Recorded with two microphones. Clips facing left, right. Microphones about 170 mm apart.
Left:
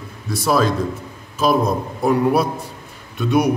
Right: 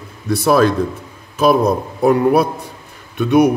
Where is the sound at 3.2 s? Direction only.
60° right (ahead or behind).